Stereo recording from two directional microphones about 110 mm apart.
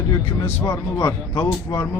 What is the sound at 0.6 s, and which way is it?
Speech, 25° left (ahead or behind).